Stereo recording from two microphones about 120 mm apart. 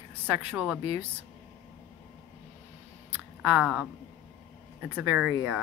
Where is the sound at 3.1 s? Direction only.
10° right (ahead or behind).